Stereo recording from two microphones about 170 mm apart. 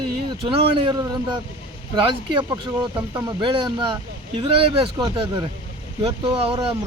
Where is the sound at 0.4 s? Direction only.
30° right (ahead or behind).